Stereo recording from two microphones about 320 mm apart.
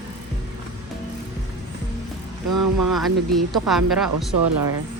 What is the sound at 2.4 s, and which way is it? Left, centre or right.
Vehicle, right.